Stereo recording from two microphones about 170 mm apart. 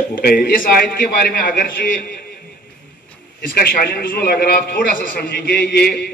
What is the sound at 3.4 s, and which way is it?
Speech, 60° left (ahead or behind).